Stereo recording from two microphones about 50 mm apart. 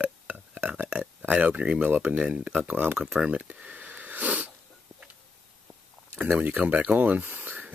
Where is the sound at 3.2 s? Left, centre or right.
Right.